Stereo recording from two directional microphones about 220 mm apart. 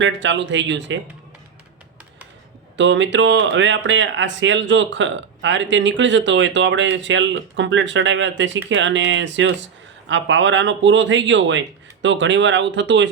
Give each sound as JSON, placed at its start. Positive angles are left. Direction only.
{"t": 0.0, "sound": "speech", "side_deg": -55}
{"t": 2.7, "sound": "speech", "side_deg": -55}